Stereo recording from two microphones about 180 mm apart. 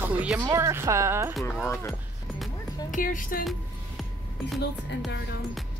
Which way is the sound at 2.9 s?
50° left (ahead or behind).